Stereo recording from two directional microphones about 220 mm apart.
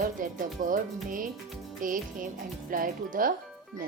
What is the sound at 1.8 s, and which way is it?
Speech, 40° right (ahead or behind).